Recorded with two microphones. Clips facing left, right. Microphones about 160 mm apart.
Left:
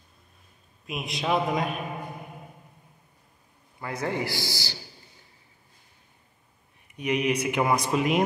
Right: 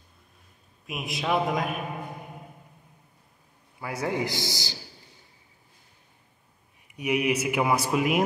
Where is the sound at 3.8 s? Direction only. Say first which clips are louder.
Right 1 dB; 10° right (ahead or behind).